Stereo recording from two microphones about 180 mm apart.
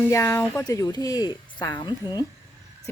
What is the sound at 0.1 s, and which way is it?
A woman's voice, 15° left (ahead or behind).